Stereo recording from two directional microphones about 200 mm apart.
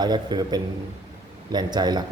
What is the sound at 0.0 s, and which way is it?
A man's voice, 20° right (ahead or behind).